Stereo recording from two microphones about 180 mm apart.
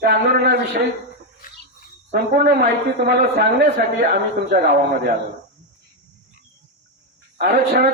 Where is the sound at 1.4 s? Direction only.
50° left (ahead or behind).